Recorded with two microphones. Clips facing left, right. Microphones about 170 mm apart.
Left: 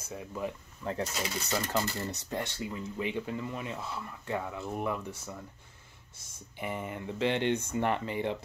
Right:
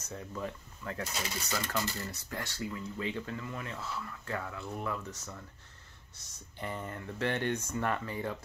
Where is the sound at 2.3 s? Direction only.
20° left (ahead or behind).